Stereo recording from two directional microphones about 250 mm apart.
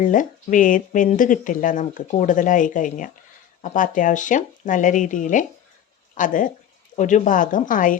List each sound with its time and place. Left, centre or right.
0.0 s speech: left